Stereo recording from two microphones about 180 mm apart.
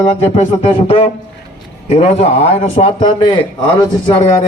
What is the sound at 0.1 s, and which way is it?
A man's voice, 35° left (ahead or behind).